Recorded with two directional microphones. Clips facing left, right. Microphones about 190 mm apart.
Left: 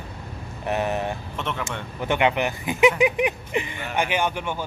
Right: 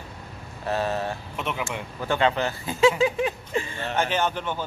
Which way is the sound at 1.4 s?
5° right (ahead or behind).